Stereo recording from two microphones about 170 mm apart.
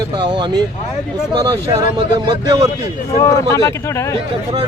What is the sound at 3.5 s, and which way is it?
Speech, 15° left (ahead or behind).